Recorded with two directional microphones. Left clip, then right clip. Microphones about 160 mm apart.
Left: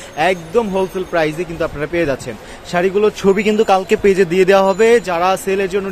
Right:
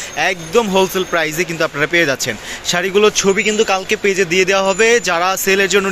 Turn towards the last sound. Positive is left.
turn(degrees=0)  # may be behind; listen again after turning